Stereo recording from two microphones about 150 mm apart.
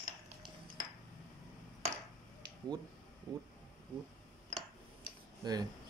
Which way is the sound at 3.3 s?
30° right (ahead or behind).